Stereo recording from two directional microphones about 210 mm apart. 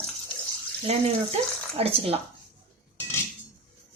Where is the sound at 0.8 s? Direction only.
30° right (ahead or behind).